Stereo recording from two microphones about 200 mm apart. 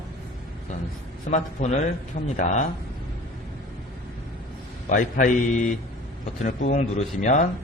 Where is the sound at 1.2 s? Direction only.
35° left (ahead or behind).